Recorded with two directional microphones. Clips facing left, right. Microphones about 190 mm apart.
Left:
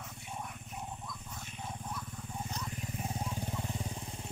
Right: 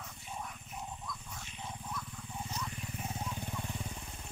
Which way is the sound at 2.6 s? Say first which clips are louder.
Left 2 dB; 35° left (ahead or behind).